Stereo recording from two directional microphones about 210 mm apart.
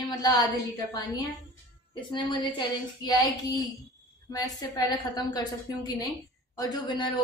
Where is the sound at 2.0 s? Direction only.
20° left (ahead or behind).